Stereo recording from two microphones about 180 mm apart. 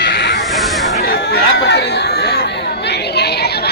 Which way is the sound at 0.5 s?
Centre (ahead or behind).